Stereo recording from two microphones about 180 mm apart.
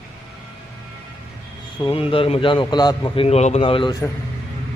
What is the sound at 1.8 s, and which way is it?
A man's voice, 30° left (ahead or behind).